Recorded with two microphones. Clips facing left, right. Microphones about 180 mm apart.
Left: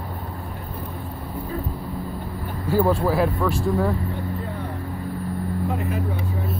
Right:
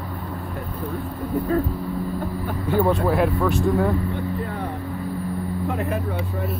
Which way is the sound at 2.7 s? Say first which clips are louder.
Even; 5° left (ahead or behind).